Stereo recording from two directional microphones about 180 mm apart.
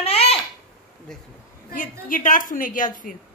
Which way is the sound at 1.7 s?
45° left (ahead or behind).